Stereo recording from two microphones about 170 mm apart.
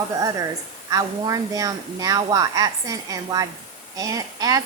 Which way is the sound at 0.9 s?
20° right (ahead or behind).